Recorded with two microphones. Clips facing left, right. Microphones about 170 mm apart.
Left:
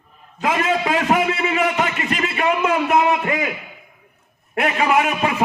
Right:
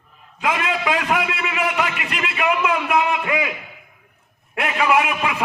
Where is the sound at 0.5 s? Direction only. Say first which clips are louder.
Left 5 dB; 40° left (ahead or behind).